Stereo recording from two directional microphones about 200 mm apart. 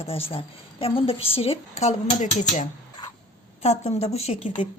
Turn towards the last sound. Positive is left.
turn(degrees=30)  # may be behind; listen again after turning